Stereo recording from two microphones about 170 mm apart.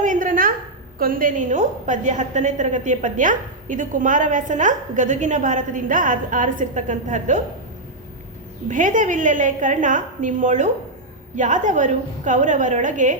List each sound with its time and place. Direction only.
0.0 s a sound: 50° right (ahead or behind)
0.9 s a woman's voice: 55° right (ahead or behind)
8.6 s a woman's voice: 50° right (ahead or behind)